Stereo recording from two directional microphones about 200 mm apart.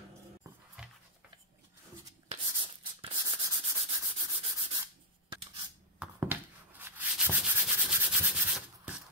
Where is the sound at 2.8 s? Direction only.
25° right (ahead or behind).